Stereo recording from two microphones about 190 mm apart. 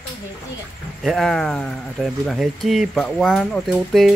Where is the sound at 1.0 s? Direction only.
Centre (ahead or behind).